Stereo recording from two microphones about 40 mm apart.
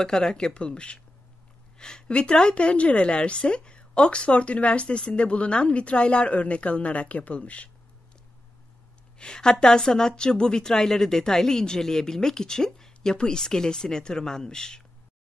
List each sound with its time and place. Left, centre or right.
0.0 s a woman's voice: centre; by 7.7 s left
9.2 s a woman's voice: centre